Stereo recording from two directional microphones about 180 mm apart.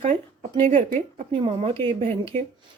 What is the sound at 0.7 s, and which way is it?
Speech, 45° right (ahead or behind).